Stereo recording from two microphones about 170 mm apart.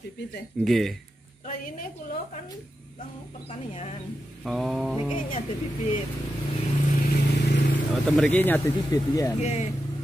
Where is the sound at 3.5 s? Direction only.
40° left (ahead or behind).